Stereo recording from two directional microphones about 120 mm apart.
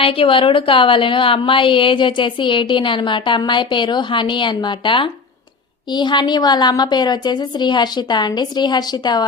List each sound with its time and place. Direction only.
0.0 s a woman's voice: 50° left (ahead or behind)